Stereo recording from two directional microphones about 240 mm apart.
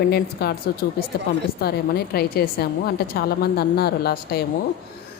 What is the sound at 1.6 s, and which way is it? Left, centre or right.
A woman's voice, left.